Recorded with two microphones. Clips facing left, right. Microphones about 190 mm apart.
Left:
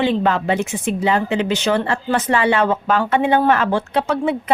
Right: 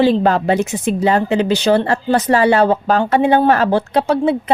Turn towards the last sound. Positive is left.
turn(degrees=-35)  # may be behind; listen again after turning